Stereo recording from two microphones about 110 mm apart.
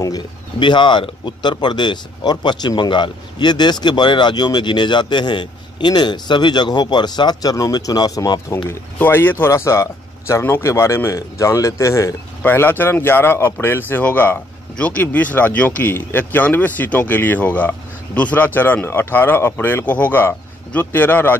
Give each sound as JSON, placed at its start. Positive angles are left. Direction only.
{"t": 0.6, "sound": "speech", "side_deg": 45}
{"t": 8.6, "sound": "speech", "side_deg": 20}
{"t": 12.4, "sound": "speech", "side_deg": 20}